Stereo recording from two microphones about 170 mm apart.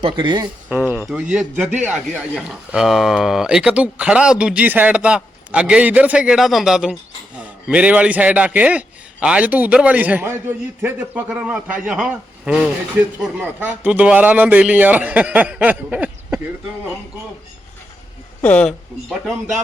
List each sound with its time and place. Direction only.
0.0 s speech: 30° right (ahead or behind)
0.9 s a man's voice: 5° right (ahead or behind)
18.4 s a man's voice: 5° left (ahead or behind)